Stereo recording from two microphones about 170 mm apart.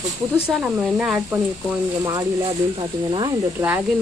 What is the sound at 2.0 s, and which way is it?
Speech, 20° right (ahead or behind).